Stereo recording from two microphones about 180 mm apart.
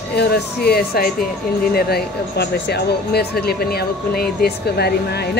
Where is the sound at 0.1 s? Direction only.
65° left (ahead or behind).